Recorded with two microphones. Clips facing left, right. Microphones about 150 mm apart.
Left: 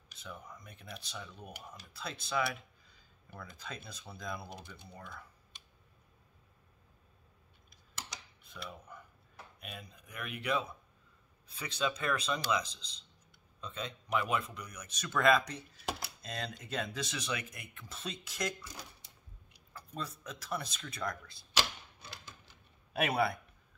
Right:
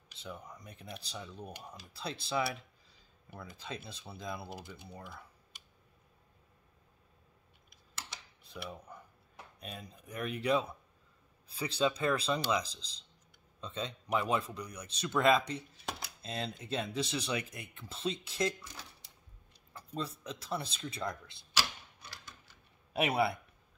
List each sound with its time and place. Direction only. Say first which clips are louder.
0.6 s speech: right 2 dB; 35° right (ahead or behind)
4.5 s speech: right 3 dB; 5° right (ahead or behind)
8.5 s dishes: right 3 dB; 30° right (ahead or behind)
9.6 s speech: right 3 dB; 35° right (ahead or behind)
20.0 s speech: right 3 dB; 30° right (ahead or behind)
22.9 s speech: right 1 dB; 25° right (ahead or behind)